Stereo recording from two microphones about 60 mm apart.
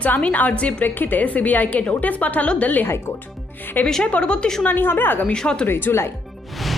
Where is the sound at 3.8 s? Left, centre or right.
Centre.